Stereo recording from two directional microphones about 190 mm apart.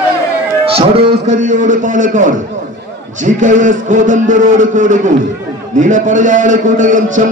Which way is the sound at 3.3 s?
40° right (ahead or behind).